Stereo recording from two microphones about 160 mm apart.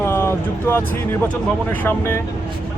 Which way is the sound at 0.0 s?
15° left (ahead or behind).